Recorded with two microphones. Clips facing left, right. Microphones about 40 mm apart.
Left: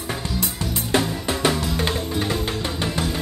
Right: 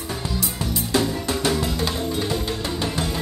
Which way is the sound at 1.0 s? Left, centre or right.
Left.